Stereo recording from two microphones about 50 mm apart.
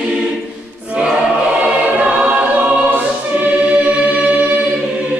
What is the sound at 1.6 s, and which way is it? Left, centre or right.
Choir, right.